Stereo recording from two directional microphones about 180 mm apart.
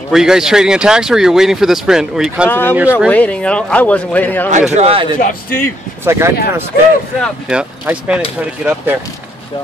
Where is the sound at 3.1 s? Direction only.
5° left (ahead or behind).